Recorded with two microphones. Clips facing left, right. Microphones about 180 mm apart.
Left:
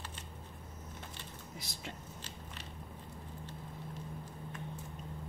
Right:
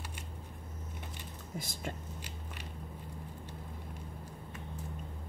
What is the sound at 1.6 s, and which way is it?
Speech, 50° right (ahead or behind).